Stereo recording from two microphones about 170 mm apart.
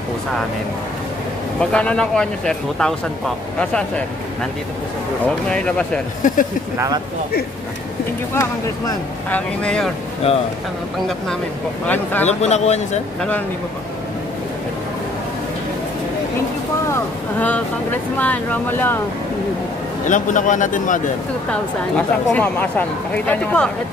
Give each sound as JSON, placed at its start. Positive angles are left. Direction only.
{"t": 1.6, "sound": "speech", "side_deg": 5}
{"t": 8.4, "sound": "a woman's voice", "side_deg": 15}
{"t": 10.2, "sound": "a man's voice", "side_deg": 40}
{"t": 11.8, "sound": "a woman's voice", "side_deg": 10}
{"t": 12.3, "sound": "a man's voice", "side_deg": 40}
{"t": 16.9, "sound": "a woman's voice", "side_deg": 10}
{"t": 20.1, "sound": "a man's voice", "side_deg": 50}
{"t": 21.5, "sound": "a woman's voice", "side_deg": 5}